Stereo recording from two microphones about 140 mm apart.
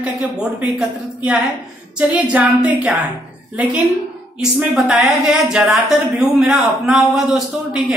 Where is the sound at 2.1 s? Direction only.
10° right (ahead or behind).